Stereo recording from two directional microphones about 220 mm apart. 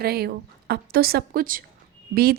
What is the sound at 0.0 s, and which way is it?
A woman's voice, 45° right (ahead or behind).